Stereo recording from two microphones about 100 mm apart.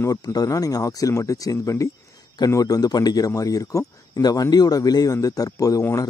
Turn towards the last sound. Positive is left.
turn(degrees=30)  # may be behind; listen again after turning